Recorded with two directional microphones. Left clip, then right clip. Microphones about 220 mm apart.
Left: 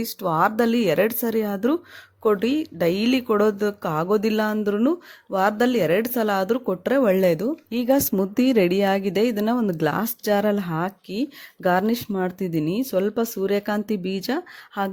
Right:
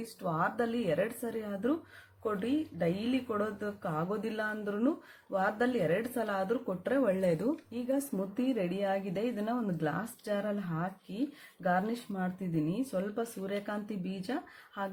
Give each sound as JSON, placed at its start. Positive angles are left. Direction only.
{"t": 0.2, "sound": "speech", "side_deg": 50}